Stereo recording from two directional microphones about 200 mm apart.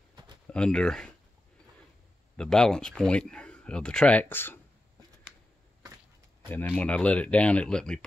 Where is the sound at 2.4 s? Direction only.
5° left (ahead or behind).